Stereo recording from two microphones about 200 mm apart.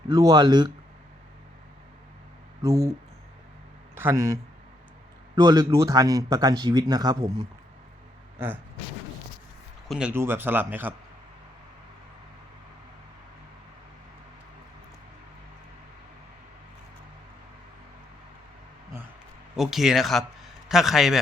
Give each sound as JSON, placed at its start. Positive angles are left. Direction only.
{"t": 0.1, "sound": "speech", "side_deg": -20}
{"t": 2.6, "sound": "speech", "side_deg": -15}
{"t": 3.9, "sound": "a man's voice", "side_deg": -10}
{"t": 9.9, "sound": "speech", "side_deg": -10}
{"t": 19.5, "sound": "a man's voice", "side_deg": 0}